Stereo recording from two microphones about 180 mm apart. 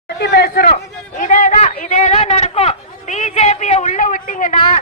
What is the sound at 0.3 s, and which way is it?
Chatter, 60° left (ahead or behind).